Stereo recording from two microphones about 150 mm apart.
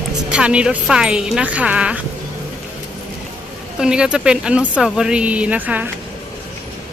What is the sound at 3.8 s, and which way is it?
Speech, 5° right (ahead or behind).